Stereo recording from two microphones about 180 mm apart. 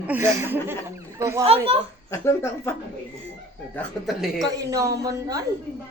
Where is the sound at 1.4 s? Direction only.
35° right (ahead or behind).